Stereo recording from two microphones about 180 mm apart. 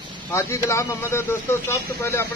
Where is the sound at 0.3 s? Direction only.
15° left (ahead or behind).